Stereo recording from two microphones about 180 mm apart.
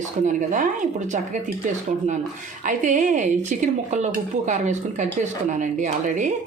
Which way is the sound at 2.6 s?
45° right (ahead or behind).